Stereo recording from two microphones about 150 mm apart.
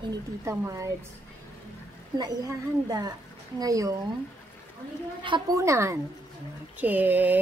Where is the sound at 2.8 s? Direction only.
25° right (ahead or behind).